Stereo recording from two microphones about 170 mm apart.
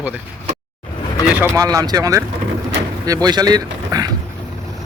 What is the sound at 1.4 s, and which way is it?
Speech, 20° right (ahead or behind).